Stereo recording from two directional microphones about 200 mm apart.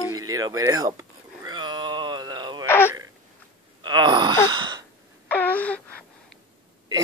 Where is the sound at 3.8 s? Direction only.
20° right (ahead or behind).